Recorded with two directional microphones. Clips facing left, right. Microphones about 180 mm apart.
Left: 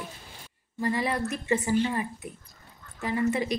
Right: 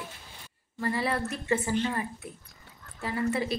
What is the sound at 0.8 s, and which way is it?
A woman's voice, 15° left (ahead or behind).